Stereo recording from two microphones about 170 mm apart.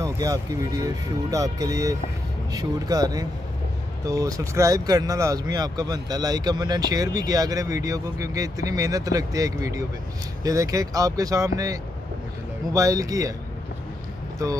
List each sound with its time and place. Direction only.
0.0 s speech: 20° right (ahead or behind)